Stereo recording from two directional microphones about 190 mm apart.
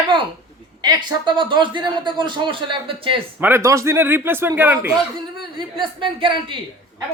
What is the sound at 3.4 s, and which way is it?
Speech, 10° right (ahead or behind).